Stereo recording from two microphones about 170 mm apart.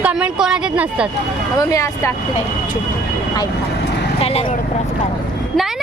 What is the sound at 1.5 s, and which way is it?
Speech, 20° left (ahead or behind).